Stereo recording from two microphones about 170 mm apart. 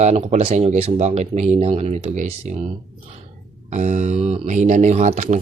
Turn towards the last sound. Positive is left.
turn(degrees=-45)  # may be behind; listen again after turning